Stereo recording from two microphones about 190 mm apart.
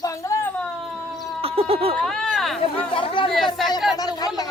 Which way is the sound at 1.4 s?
30° right (ahead or behind).